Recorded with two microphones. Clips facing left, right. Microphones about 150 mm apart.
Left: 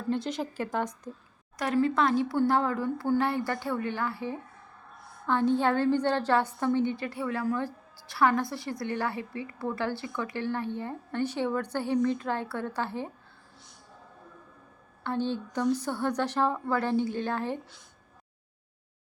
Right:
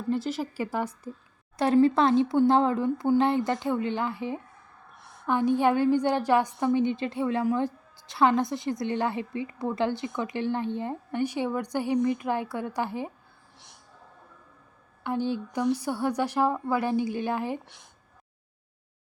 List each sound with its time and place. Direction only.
0.1 s speech: 5° right (ahead or behind)
1.5 s a woman's voice: 30° right (ahead or behind); by 13.1 s 15° right (ahead or behind)
15.0 s speech: 10° right (ahead or behind)